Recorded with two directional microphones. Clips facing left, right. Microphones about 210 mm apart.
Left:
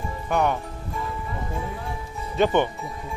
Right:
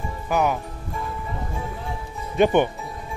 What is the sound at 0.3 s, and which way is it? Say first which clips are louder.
Speech: right 1 dB; 5° right (ahead or behind).